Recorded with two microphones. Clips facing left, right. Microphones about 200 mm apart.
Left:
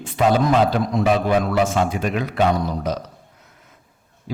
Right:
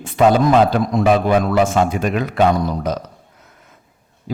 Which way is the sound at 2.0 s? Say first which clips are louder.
Right 3 dB; 50° right (ahead or behind).